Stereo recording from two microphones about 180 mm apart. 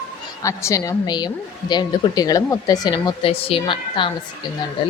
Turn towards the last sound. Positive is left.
turn(degrees=25)  # may be behind; listen again after turning